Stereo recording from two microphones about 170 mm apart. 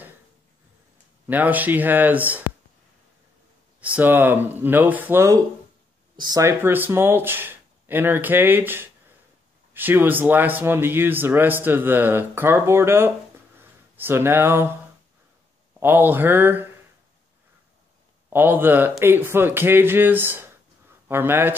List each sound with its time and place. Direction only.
1.2 s speech: 10° right (ahead or behind)
3.8 s speech: 10° right (ahead or behind)
15.8 s speech: 10° right (ahead or behind)
18.3 s speech: 10° right (ahead or behind)